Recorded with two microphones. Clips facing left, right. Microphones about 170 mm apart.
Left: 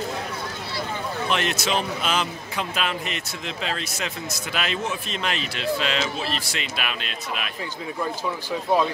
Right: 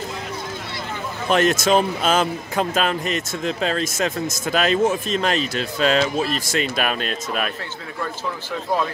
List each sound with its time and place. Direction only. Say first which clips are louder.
1.3 s speech: right 9 dB; 45° right (ahead or behind)